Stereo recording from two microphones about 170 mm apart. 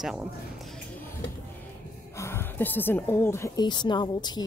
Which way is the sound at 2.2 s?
15° left (ahead or behind).